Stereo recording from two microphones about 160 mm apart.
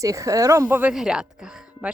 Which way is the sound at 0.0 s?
20° right (ahead or behind).